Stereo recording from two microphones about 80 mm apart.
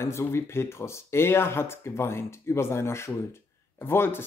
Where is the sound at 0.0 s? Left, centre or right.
Left.